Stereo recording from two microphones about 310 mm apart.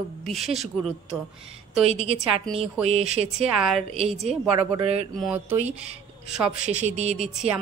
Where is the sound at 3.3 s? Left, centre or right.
Centre.